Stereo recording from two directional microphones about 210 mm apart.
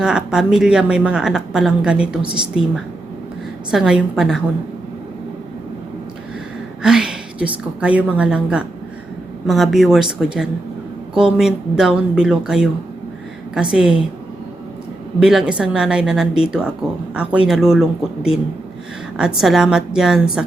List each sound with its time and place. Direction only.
0.0 s a woman's voice: 5° right (ahead or behind)
2.2 s a woman's voice: 20° right (ahead or behind)
3.7 s a woman's voice: centre (ahead or behind)
6.8 s a woman's voice: 5° right (ahead or behind)
15.2 s a woman's voice: 5° right (ahead or behind)